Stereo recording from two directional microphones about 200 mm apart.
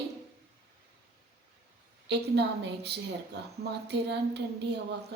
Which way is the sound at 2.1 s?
55° right (ahead or behind).